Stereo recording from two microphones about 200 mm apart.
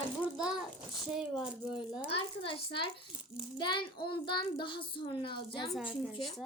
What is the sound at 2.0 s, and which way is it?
A child's voice, 25° left (ahead or behind).